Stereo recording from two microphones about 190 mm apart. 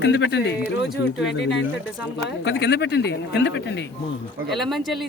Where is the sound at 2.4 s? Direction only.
65° left (ahead or behind).